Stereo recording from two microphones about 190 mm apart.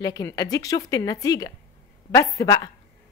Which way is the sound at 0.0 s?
20° left (ahead or behind).